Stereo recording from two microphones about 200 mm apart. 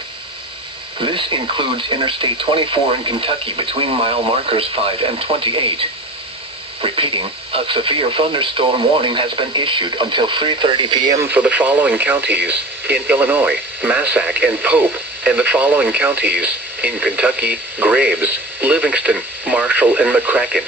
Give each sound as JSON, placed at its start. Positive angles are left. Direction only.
{"t": 0.9, "sound": "speech", "side_deg": -25}
{"t": 6.8, "sound": "speech", "side_deg": -25}